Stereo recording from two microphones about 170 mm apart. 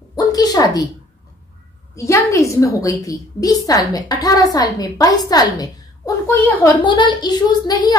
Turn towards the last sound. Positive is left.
turn(degrees=25)  # may be behind; listen again after turning